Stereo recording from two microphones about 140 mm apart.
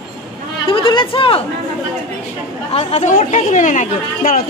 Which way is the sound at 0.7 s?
35° left (ahead or behind).